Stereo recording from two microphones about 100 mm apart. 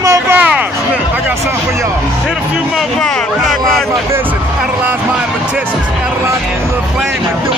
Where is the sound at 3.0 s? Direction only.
5° left (ahead or behind).